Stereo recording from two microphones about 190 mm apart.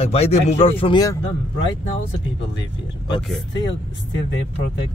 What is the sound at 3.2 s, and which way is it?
Speech, centre (ahead or behind).